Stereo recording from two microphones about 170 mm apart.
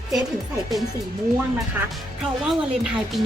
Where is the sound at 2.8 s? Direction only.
5° right (ahead or behind).